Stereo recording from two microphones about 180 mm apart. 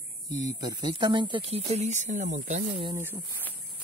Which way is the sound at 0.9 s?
25° right (ahead or behind).